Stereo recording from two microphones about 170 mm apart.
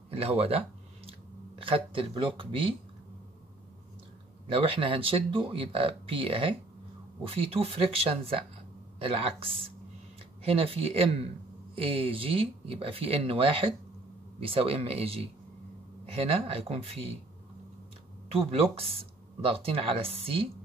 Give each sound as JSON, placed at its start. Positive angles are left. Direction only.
{"t": 0.1, "sound": "a sound", "side_deg": -35}
{"t": 1.6, "sound": "speech", "side_deg": -30}
{"t": 4.5, "sound": "speech", "side_deg": -30}
{"t": 18.3, "sound": "speech", "side_deg": -35}